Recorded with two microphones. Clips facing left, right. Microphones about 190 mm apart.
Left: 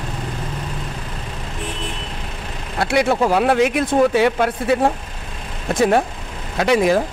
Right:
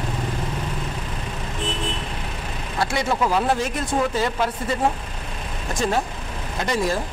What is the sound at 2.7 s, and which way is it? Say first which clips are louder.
Speech: left 6 dB; 65° left (ahead or behind).